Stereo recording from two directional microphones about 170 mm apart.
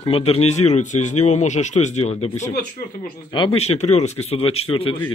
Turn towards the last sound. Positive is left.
turn(degrees=35)  # may be behind; listen again after turning